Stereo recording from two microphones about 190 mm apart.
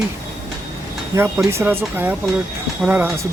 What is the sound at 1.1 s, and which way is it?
Speech, 15° right (ahead or behind).